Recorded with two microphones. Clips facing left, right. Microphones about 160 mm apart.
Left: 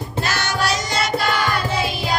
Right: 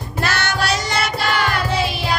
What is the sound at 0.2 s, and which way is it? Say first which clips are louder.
Music: right 1 dB; 65° right (ahead or behind).